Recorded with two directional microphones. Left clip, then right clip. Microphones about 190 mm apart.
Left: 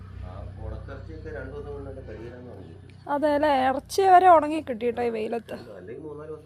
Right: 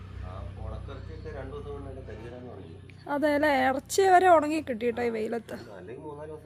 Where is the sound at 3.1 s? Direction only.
10° right (ahead or behind).